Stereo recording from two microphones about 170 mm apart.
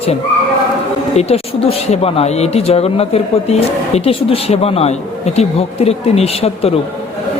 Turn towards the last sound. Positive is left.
turn(degrees=35)  # may be behind; listen again after turning